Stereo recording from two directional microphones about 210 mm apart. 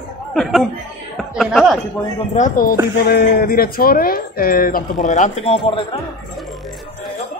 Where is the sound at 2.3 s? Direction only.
40° left (ahead or behind).